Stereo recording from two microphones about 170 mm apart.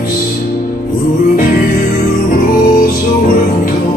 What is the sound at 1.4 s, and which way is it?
Music, 55° left (ahead or behind).